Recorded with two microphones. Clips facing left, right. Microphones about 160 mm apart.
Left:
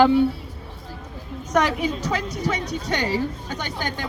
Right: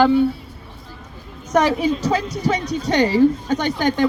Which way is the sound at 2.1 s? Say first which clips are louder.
Right 5 dB; 35° right (ahead or behind).